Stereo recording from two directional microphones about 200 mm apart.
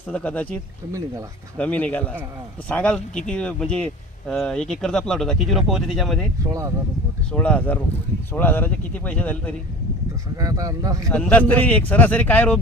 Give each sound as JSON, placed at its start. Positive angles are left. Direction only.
{"t": 0.1, "sound": "speech", "side_deg": 5}
{"t": 1.5, "sound": "speech", "side_deg": 5}
{"t": 7.3, "sound": "speech", "side_deg": 5}
{"t": 10.3, "sound": "speech", "side_deg": -15}
{"t": 11.1, "sound": "speech", "side_deg": 5}